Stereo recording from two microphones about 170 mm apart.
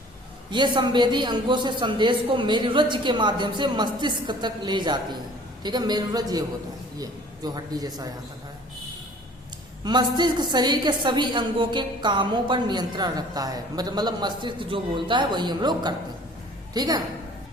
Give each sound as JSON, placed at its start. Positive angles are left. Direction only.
{"t": 0.5, "sound": "a woman's voice", "side_deg": -25}
{"t": 9.8, "sound": "a woman's voice", "side_deg": -25}